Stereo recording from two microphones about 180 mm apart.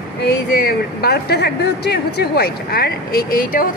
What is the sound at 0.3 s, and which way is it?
A woman's voice, 55° left (ahead or behind).